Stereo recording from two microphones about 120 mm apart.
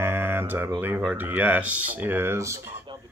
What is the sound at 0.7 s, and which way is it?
Speech, 15° right (ahead or behind).